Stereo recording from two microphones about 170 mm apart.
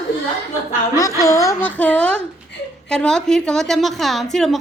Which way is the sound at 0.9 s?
20° left (ahead or behind).